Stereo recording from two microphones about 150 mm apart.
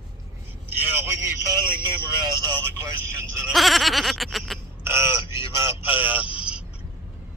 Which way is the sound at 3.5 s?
Centre (ahead or behind).